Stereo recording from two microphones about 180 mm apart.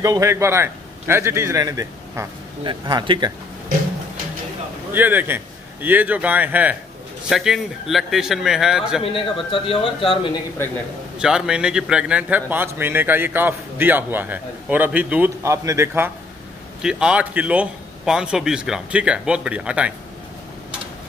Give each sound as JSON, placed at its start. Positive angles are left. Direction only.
{"t": 0.0, "sound": "a man's voice", "side_deg": -15}
{"t": 4.9, "sound": "a man's voice", "side_deg": -10}
{"t": 9.1, "sound": "speech", "side_deg": 30}
{"t": 11.1, "sound": "a man's voice", "side_deg": -5}